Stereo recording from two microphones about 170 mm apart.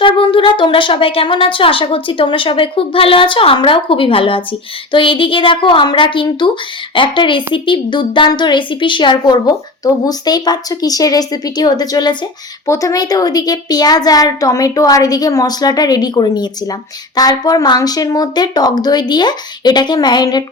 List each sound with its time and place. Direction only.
0.0 s a woman's voice: 30° left (ahead or behind)